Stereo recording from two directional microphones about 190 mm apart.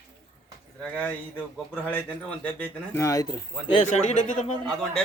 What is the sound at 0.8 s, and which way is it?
Speech, 10° left (ahead or behind).